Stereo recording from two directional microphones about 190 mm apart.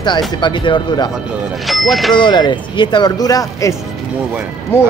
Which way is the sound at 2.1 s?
25° left (ahead or behind).